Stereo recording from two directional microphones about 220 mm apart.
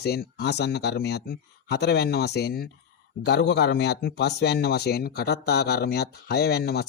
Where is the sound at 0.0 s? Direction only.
45° left (ahead or behind).